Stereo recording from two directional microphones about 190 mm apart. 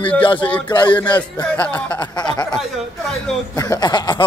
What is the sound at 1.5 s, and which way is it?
Speech, 10° left (ahead or behind).